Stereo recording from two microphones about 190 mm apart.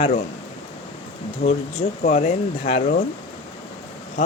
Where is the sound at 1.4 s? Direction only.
35° left (ahead or behind).